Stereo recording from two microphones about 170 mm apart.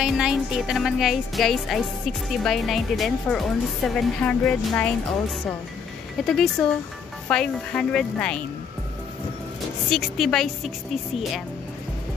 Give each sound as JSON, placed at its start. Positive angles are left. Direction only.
{"t": 0.0, "sound": "speech", "side_deg": -5}
{"t": 6.2, "sound": "speech", "side_deg": 5}
{"t": 9.8, "sound": "speech", "side_deg": 0}